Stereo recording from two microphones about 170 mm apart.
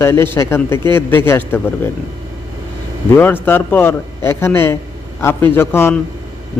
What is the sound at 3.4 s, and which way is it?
A man's voice, 10° left (ahead or behind).